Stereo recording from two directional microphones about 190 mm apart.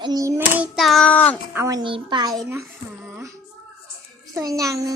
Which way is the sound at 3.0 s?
10° right (ahead or behind).